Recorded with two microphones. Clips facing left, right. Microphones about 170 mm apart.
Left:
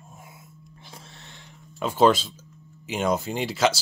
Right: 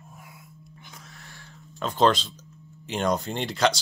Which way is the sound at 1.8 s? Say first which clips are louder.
Left 3 dB; 5° left (ahead or behind).